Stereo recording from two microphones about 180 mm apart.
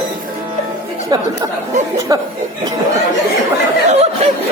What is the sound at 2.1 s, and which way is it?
Speech, 20° right (ahead or behind).